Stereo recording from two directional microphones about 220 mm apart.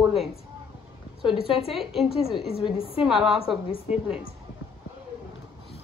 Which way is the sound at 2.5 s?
25° left (ahead or behind).